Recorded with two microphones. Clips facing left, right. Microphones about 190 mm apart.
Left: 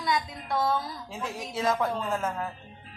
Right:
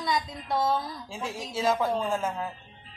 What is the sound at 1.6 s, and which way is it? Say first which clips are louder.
Speech: right 2 dB; 5° right (ahead or behind).